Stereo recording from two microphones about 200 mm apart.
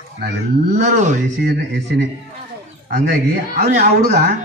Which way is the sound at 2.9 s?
45° right (ahead or behind).